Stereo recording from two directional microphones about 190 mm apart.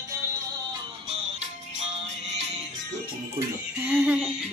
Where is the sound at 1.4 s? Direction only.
35° right (ahead or behind).